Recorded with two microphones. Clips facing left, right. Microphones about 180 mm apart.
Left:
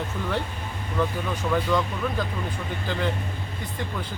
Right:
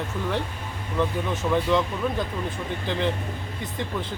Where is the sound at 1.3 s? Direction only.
20° right (ahead or behind).